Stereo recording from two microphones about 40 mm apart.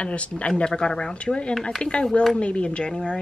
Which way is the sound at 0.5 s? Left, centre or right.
Centre.